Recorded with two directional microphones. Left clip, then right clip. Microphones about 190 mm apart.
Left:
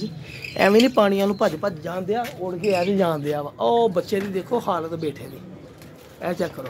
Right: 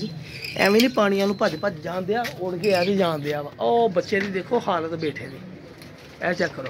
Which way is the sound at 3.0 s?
20° left (ahead or behind).